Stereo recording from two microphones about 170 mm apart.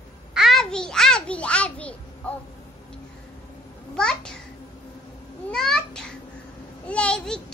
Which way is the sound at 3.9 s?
5° left (ahead or behind).